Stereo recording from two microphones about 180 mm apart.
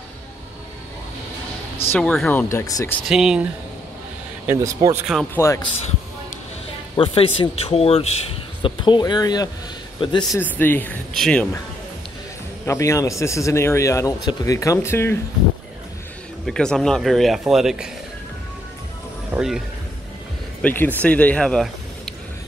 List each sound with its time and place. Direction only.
1.9 s a man's voice: 5° left (ahead or behind)
2.6 s speech: 20° left (ahead or behind)
3.1 s speech: 5° right (ahead or behind)
4.5 s speech: 15° right (ahead or behind)
5.3 s a man's voice: 15° left (ahead or behind)
7.0 s speech: 30° left (ahead or behind)
10.4 s a man's voice: 10° left (ahead or behind)
12.6 s a man's voice: 15° left (ahead or behind)
16.4 s speech: 5° left (ahead or behind)
19.3 s speech: centre (ahead or behind)
20.6 s a man's voice: 10° left (ahead or behind)